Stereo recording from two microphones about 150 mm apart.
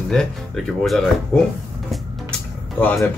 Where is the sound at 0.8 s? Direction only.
Centre (ahead or behind).